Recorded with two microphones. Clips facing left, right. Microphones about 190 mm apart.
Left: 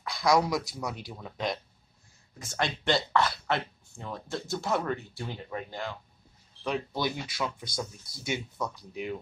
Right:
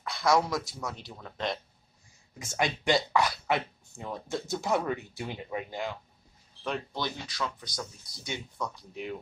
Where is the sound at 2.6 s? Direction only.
15° right (ahead or behind).